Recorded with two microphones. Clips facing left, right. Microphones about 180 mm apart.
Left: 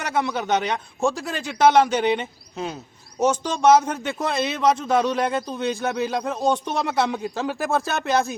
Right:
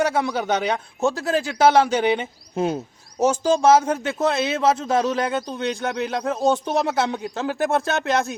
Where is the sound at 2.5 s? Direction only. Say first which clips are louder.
Right 8 dB; 50° right (ahead or behind).